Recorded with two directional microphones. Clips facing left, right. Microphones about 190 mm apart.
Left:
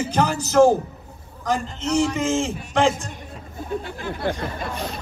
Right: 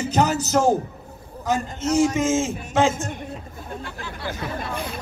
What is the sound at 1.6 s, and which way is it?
Speech, 50° right (ahead or behind).